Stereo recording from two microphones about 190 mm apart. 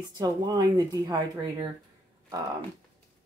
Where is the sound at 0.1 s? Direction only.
20° right (ahead or behind).